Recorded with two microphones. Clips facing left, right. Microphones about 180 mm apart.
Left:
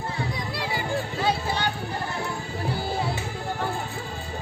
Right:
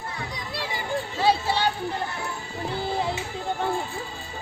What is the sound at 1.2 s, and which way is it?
Music, 30° right (ahead or behind).